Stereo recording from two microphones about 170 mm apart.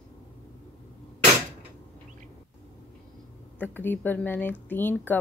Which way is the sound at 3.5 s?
10° left (ahead or behind).